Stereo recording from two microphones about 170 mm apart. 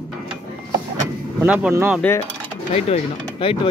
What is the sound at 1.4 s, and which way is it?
Speech, 10° right (ahead or behind).